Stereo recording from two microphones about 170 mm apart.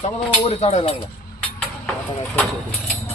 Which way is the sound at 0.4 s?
35° left (ahead or behind).